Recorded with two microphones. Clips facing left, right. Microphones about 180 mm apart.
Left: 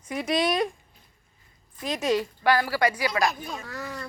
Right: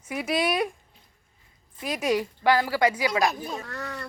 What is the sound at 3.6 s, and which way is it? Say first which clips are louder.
Speech: even; 5° left (ahead or behind).